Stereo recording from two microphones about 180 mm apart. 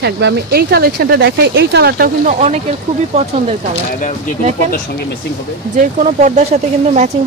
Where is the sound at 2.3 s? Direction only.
40° right (ahead or behind).